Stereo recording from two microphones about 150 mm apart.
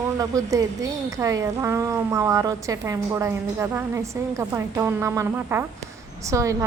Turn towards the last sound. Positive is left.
turn(degrees=-20)  # may be behind; listen again after turning